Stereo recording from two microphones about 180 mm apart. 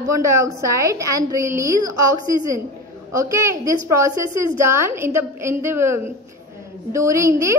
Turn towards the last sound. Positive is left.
turn(degrees=-15)  # may be behind; listen again after turning